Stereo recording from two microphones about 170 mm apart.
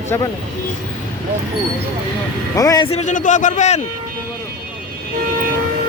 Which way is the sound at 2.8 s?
40° left (ahead or behind).